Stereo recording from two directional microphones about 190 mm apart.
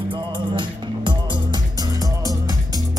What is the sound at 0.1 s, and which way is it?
Music, 25° right (ahead or behind).